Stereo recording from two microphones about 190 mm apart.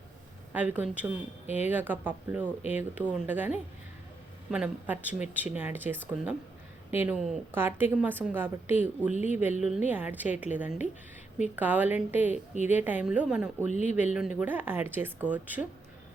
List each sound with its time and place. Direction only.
0.5 s a woman's voice: 10° right (ahead or behind)
1.5 s speech: 35° left (ahead or behind)
1.7 s a woman's voice: 10° right (ahead or behind)
13.7 s speech: 40° left (ahead or behind)
13.9 s a woman's voice: 5° right (ahead or behind)